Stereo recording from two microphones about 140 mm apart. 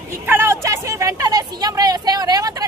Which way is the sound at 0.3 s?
15° right (ahead or behind).